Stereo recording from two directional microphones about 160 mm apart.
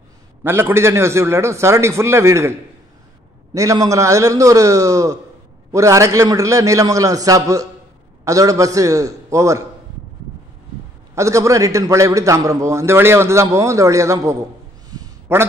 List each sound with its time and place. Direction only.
0.4 s a man's voice: 15° right (ahead or behind)
3.5 s a man's voice: 20° right (ahead or behind)
11.1 s a man's voice: 20° right (ahead or behind)
14.9 s a sound: 20° right (ahead or behind)